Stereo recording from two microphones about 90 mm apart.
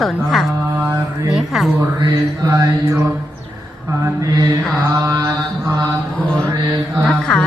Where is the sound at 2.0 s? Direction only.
40° right (ahead or behind).